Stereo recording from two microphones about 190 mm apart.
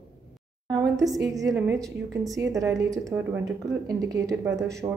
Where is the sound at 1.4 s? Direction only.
15° right (ahead or behind).